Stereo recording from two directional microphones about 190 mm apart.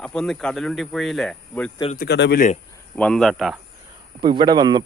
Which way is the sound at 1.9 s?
55° left (ahead or behind).